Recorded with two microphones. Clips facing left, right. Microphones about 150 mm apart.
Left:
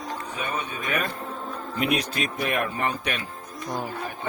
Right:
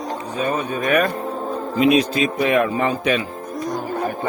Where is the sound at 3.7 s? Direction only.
50° right (ahead or behind).